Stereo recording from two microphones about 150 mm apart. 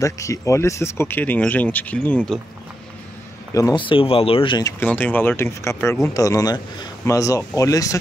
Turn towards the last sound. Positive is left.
turn(degrees=20)  # may be behind; listen again after turning